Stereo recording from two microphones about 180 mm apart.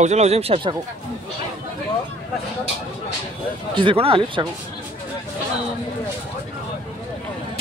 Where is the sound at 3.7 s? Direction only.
30° right (ahead or behind).